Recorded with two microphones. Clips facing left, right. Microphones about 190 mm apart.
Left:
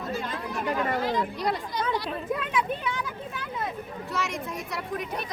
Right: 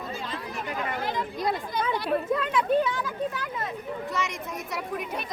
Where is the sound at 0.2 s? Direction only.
50° left (ahead or behind).